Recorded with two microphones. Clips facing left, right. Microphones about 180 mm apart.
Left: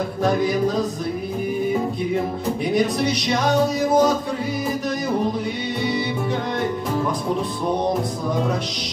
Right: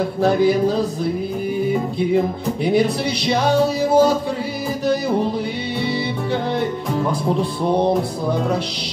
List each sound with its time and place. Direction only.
0.2 s music: 30° right (ahead or behind)
2.6 s music: 30° right (ahead or behind)